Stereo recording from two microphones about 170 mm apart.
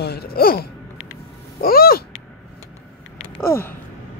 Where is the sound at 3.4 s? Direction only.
15° left (ahead or behind).